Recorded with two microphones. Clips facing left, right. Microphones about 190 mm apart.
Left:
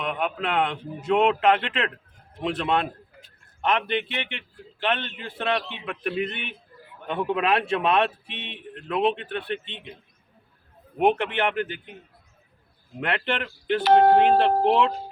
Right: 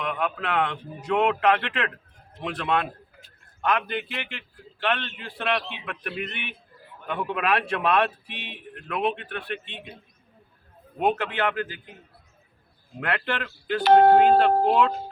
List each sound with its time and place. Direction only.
0.0 s a man's voice: 25° left (ahead or behind)
10.9 s a man's voice: 20° left (ahead or behind)
13.0 s a man's voice: 20° left (ahead or behind)